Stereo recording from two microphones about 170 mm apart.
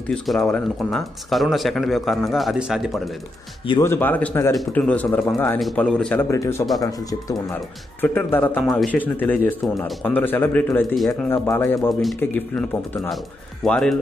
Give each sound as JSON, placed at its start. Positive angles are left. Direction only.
{"t": 0.1, "sound": "speech", "side_deg": 5}
{"t": 3.8, "sound": "speech", "side_deg": 10}
{"t": 6.3, "sound": "speech", "side_deg": 20}
{"t": 11.9, "sound": "speech", "side_deg": 0}
{"t": 12.2, "sound": "speech", "side_deg": 10}